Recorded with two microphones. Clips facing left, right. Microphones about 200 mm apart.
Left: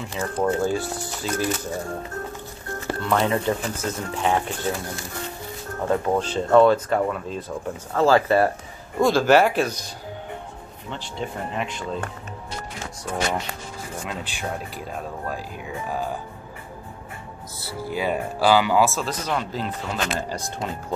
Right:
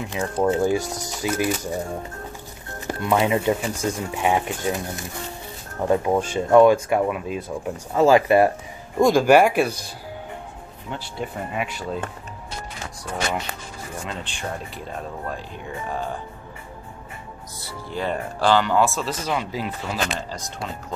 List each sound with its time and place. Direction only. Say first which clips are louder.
0.1 s speech: right 2 dB; 15° right (ahead or behind)
2.9 s speech: right 2 dB; 15° right (ahead or behind)
10.9 s speech: even; 10° right (ahead or behind)
14.0 s speech: left 1 dB; 5° left (ahead or behind)
17.6 s speech: left 2 dB; 5° left (ahead or behind)